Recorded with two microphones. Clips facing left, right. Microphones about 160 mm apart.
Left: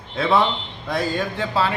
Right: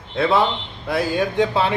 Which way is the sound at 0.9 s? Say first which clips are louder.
Right 3 dB; 10° right (ahead or behind).